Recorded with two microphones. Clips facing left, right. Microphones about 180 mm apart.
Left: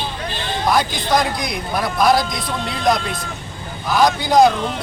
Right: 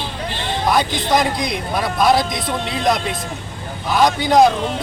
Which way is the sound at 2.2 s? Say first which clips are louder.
Right 2 dB; 25° right (ahead or behind).